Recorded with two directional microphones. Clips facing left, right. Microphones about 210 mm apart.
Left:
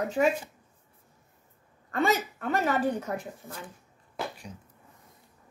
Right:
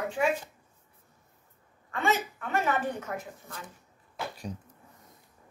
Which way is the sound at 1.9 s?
40° left (ahead or behind).